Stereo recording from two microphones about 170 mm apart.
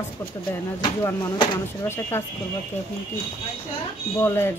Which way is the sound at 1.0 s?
15° left (ahead or behind).